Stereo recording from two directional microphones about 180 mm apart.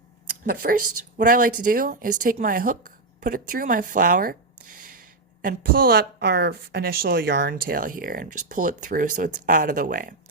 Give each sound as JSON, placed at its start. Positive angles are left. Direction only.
{"t": 0.4, "sound": "a woman's voice", "side_deg": -55}
{"t": 5.4, "sound": "a woman's voice", "side_deg": -55}